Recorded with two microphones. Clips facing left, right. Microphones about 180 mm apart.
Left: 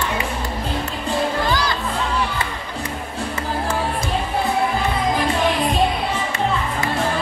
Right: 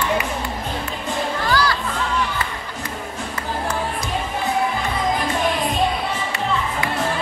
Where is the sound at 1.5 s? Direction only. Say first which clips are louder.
Right 1 dB; 20° left (ahead or behind).